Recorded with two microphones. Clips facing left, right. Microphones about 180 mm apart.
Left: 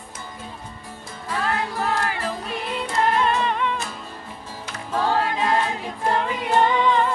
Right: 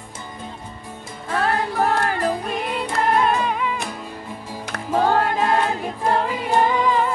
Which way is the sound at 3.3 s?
5° right (ahead or behind).